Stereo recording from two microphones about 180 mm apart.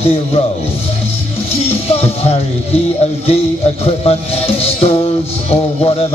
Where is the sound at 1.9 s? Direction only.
35° left (ahead or behind).